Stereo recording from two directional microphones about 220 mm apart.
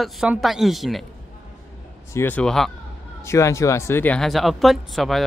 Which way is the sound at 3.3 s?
15° left (ahead or behind).